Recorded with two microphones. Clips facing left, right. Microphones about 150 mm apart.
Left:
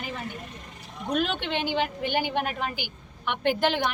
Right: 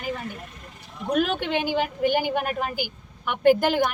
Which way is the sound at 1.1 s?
10° right (ahead or behind).